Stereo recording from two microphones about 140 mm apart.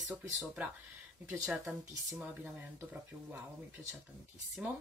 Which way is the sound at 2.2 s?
10° right (ahead or behind).